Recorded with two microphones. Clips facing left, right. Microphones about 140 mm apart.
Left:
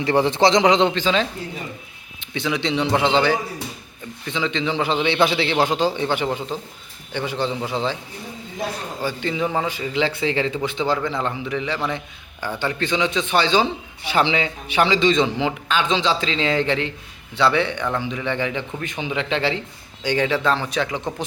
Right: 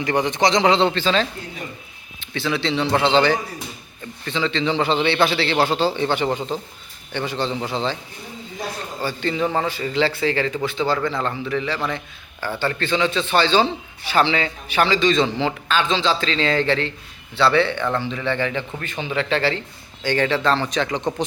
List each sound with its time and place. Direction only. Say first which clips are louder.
0.0 s a man's voice: left 2 dB; 30° left (ahead or behind); by 7.9 s 10° left (ahead or behind)
9.0 s a man's voice: right 1 dB; 10° left (ahead or behind)